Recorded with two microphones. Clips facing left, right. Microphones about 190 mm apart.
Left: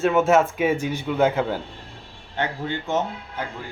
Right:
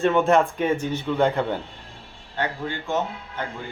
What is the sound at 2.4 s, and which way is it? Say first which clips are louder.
Speech: left 1 dB; 20° left (ahead or behind).